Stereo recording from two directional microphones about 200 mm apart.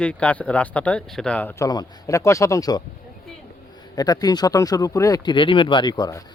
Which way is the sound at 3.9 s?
20° left (ahead or behind).